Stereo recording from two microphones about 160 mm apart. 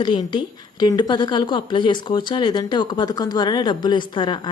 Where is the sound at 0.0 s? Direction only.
30° left (ahead or behind).